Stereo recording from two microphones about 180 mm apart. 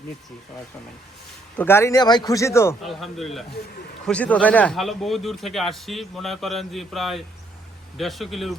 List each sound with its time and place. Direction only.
1.5 s a man's voice: 10° left (ahead or behind)
2.8 s speech: centre (ahead or behind)